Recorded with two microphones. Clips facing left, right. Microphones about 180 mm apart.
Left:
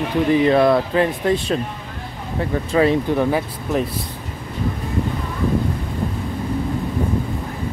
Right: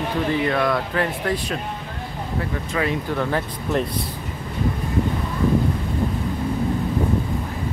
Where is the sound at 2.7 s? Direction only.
30° left (ahead or behind).